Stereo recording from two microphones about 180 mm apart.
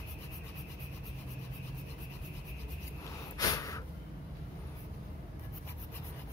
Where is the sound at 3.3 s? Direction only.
20° left (ahead or behind).